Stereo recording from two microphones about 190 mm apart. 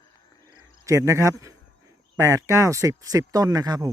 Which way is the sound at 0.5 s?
15° right (ahead or behind).